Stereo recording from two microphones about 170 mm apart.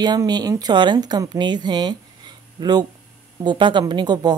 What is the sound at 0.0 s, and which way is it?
Speech, 25° right (ahead or behind).